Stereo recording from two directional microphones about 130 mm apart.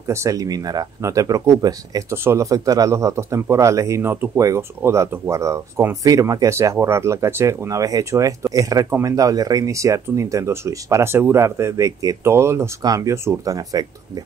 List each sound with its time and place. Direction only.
0.1 s speech: 25° right (ahead or behind)